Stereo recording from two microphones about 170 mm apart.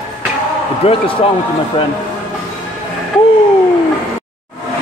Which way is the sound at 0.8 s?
35° left (ahead or behind).